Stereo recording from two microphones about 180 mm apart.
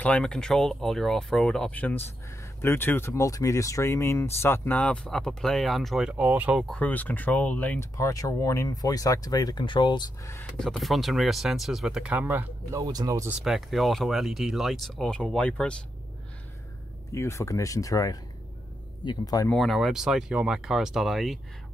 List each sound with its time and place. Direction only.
0.0 s speech: 5° left (ahead or behind)
6.6 s speech: 5° left (ahead or behind)
10.6 s speech: centre (ahead or behind)
12.8 s speech: 20° right (ahead or behind)
13.3 s speech: centre (ahead or behind)
17.1 s speech: 15° left (ahead or behind)
19.5 s speech: centre (ahead or behind)